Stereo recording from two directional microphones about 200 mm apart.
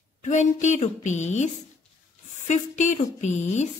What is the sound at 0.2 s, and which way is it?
A woman's voice, 35° left (ahead or behind).